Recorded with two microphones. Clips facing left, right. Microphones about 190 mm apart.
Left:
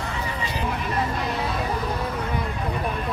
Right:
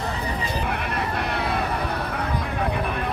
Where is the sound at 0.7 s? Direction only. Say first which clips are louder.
Left 1 dB; 65° right (ahead or behind).